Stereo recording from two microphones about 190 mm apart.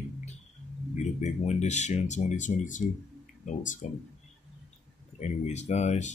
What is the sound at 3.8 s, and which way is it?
Speech, 40° left (ahead or behind).